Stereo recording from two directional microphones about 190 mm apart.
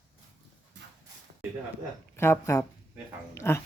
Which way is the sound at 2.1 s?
15° left (ahead or behind).